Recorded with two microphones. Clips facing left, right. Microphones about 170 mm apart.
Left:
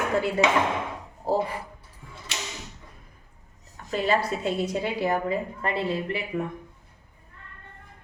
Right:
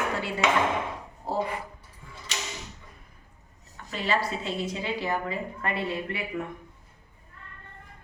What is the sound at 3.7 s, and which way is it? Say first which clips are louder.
A woman's voice: left 4 dB; 45° left (ahead or behind).